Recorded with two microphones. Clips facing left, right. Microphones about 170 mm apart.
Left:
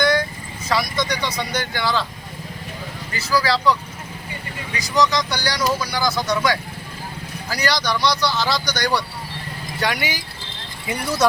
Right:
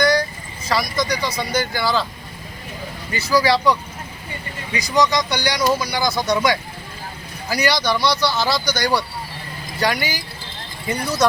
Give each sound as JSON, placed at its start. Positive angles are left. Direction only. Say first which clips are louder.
{"t": 0.0, "sound": "vehicle", "louder": "right 1 dB", "side_deg": 0}
{"t": 0.7, "sound": "speech", "louder": "right 1 dB", "side_deg": 0}
{"t": 3.2, "sound": "speech", "louder": "right 2 dB", "side_deg": -15}